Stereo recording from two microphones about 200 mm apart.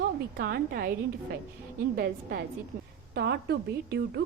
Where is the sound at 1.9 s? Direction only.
50° right (ahead or behind).